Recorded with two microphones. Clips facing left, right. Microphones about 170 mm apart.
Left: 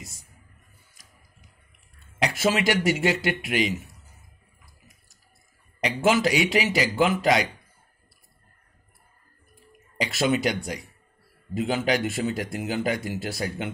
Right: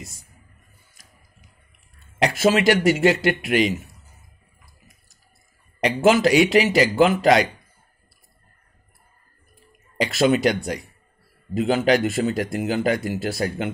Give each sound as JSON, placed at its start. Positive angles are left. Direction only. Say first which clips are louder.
{"t": 2.5, "sound": "speech", "louder": "right 5 dB", "side_deg": -55}
{"t": 6.0, "sound": "speech", "louder": "right 6 dB", "side_deg": -60}
{"t": 10.0, "sound": "speech", "louder": "right 5 dB", "side_deg": -60}